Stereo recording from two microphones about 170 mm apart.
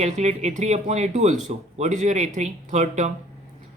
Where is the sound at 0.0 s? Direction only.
40° right (ahead or behind).